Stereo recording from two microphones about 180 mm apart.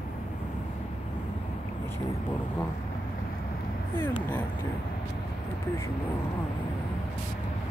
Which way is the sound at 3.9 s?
10° left (ahead or behind).